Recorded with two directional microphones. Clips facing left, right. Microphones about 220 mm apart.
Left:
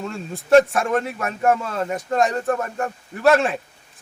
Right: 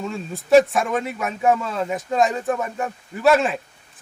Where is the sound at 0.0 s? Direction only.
Centre (ahead or behind).